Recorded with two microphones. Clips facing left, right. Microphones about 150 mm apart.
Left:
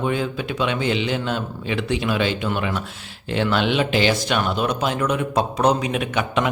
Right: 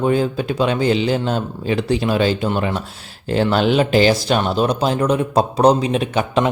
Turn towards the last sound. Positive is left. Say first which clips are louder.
# right 4 dB
turn(degrees=-35)  # may be behind; listen again after turning